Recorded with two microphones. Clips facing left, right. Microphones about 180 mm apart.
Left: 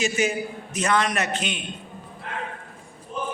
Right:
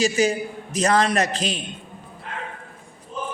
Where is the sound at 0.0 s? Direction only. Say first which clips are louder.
Right 4 dB; 35° right (ahead or behind).